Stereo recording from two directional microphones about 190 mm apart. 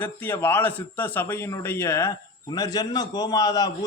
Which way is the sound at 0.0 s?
10° left (ahead or behind).